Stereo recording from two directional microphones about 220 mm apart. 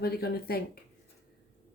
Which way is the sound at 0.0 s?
45° left (ahead or behind).